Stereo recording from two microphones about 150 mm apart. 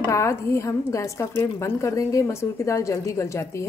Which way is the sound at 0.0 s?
20° left (ahead or behind).